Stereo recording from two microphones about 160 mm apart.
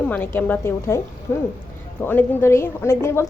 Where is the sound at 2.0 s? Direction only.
15° left (ahead or behind).